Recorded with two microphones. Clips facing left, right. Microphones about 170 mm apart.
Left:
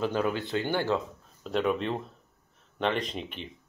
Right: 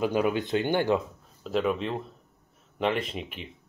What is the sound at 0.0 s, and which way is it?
Speech, 15° right (ahead or behind).